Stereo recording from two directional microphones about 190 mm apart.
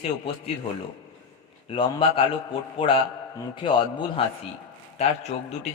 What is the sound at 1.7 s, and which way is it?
A man's voice, 30° left (ahead or behind).